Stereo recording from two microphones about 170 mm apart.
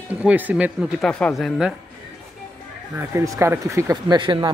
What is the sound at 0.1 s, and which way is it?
Speech, 10° right (ahead or behind).